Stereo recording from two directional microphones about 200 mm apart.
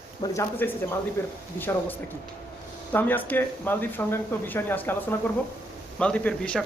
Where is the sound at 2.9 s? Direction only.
10° left (ahead or behind).